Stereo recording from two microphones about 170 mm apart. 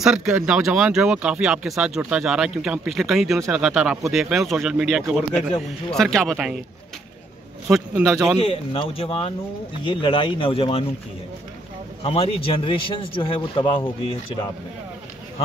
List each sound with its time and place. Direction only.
0.0 s speech: 5° right (ahead or behind)
7.7 s speech: 10° right (ahead or behind)
8.4 s speech: 35° left (ahead or behind)
12.0 s speech: 35° left (ahead or behind)